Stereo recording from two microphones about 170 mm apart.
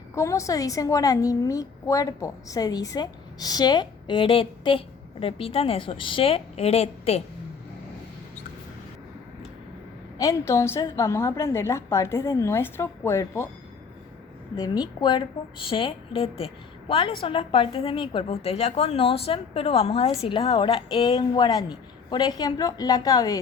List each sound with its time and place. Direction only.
0.2 s a woman's voice: 20° left (ahead or behind); by 7.2 s 35° left (ahead or behind)
10.2 s a woman's voice: 20° left (ahead or behind)
14.5 s a woman's voice: 25° left (ahead or behind)